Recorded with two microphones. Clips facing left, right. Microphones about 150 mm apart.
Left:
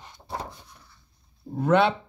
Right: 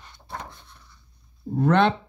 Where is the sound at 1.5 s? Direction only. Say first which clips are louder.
Right 1 dB; 10° left (ahead or behind).